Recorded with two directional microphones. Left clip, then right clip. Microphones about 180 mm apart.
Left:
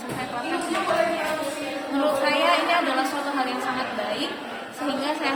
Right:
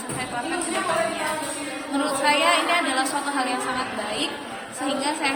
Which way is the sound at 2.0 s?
15° left (ahead or behind).